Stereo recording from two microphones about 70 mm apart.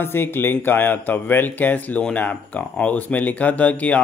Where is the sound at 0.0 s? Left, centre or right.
Left.